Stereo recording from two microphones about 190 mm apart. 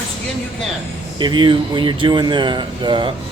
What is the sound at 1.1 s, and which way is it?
Speech, 25° right (ahead or behind).